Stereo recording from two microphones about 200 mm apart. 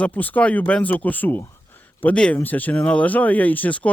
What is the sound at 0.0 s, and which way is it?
Speech, 10° left (ahead or behind).